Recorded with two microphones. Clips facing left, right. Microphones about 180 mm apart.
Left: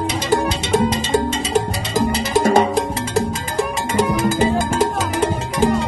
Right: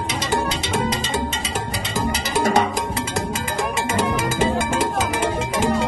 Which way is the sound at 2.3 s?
35° left (ahead or behind).